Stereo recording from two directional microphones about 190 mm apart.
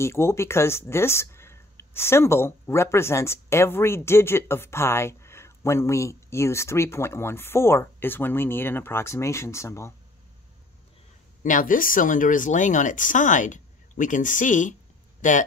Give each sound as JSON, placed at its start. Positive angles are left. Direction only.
{"t": 0.0, "sound": "speech", "side_deg": 15}
{"t": 11.4, "sound": "speech", "side_deg": 45}